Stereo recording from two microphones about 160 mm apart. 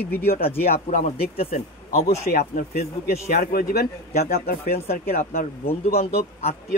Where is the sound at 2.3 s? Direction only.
60° left (ahead or behind).